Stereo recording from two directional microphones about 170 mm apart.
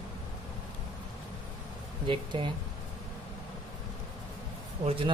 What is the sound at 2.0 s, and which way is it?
Speech, 30° right (ahead or behind).